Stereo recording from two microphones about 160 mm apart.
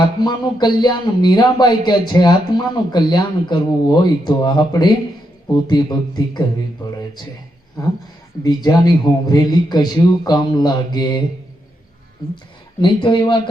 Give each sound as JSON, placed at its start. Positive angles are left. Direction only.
{"t": 0.0, "sound": "speech", "side_deg": 25}
{"t": 7.8, "sound": "speech", "side_deg": 20}
{"t": 12.8, "sound": "speech", "side_deg": 30}